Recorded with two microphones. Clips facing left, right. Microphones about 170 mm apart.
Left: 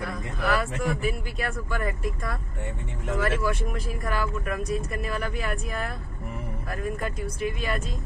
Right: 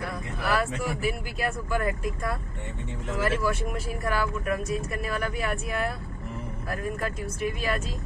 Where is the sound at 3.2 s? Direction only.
Centre (ahead or behind).